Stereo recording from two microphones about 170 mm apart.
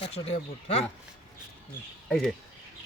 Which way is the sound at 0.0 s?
35° left (ahead or behind).